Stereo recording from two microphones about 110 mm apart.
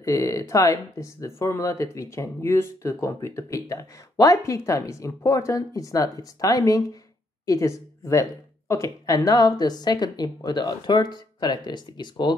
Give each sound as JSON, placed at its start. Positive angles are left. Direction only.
{"t": 0.0, "sound": "speech", "side_deg": 30}